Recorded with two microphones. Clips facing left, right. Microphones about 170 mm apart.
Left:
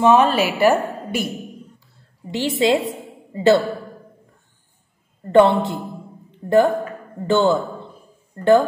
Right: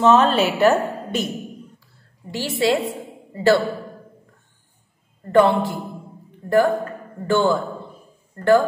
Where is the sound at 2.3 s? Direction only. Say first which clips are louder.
Left 2 dB; 20° left (ahead or behind).